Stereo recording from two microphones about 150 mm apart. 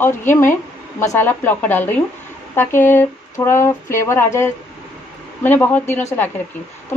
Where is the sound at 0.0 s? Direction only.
15° left (ahead or behind).